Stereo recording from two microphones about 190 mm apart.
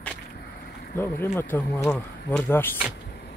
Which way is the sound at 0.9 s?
10° left (ahead or behind).